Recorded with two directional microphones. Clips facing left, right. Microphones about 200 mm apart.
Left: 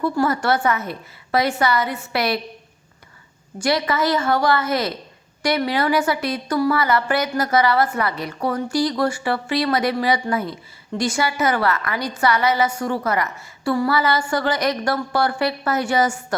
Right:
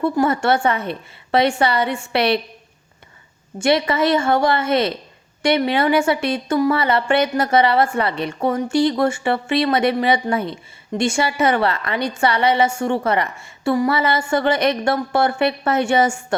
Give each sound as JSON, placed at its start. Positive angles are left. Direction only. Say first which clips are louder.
{"t": 0.0, "sound": "a woman's voice", "louder": "right 2 dB", "side_deg": -25}
{"t": 3.6, "sound": "a woman's voice", "louder": "right 3 dB", "side_deg": -25}